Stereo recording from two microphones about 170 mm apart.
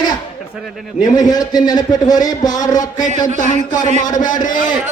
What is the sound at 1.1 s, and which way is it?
Speech, 20° left (ahead or behind).